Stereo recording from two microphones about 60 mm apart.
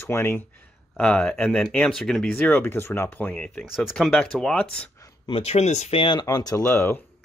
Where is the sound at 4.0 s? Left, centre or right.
Centre.